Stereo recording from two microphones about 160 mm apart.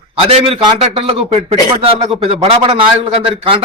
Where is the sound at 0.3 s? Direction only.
35° right (ahead or behind).